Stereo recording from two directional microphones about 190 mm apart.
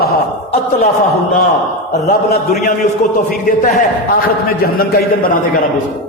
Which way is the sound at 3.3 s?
45° left (ahead or behind).